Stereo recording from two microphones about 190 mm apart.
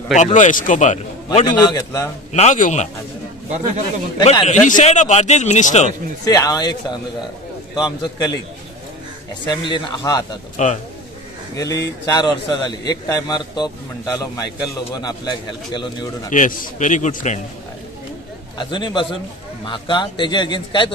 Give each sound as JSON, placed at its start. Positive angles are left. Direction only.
{"t": 0.1, "sound": "a man's voice", "side_deg": 40}
{"t": 1.5, "sound": "a man's voice", "side_deg": 20}
{"t": 2.3, "sound": "a man's voice", "side_deg": 40}
{"t": 3.4, "sound": "a man's voice", "side_deg": -40}
{"t": 4.3, "sound": "a man's voice", "side_deg": 40}
{"t": 6.2, "sound": "a man's voice", "side_deg": 20}
{"t": 9.5, "sound": "a man's voice", "side_deg": 25}
{"t": 10.6, "sound": "a man's voice", "side_deg": 40}
{"t": 11.5, "sound": "a man's voice", "side_deg": 15}
{"t": 15.0, "sound": "a man's voice", "side_deg": 25}
{"t": 16.3, "sound": "a man's voice", "side_deg": 45}
{"t": 18.6, "sound": "a man's voice", "side_deg": 25}